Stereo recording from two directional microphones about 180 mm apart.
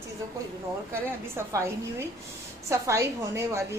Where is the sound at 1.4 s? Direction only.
15° right (ahead or behind).